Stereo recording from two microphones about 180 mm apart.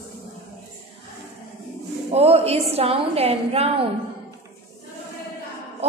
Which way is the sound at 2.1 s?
35° right (ahead or behind).